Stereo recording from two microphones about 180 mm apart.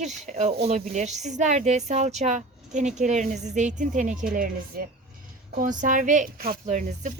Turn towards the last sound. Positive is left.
turn(degrees=-45)  # may be behind; listen again after turning